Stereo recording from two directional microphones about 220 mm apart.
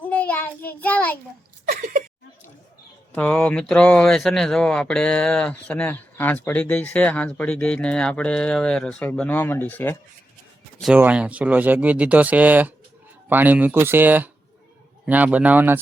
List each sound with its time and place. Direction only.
0.0 s child singing: 5° left (ahead or behind)
1.6 s a sound: 35° right (ahead or behind)
3.2 s speech: 5° left (ahead or behind)
10.8 s speech: 5° right (ahead or behind)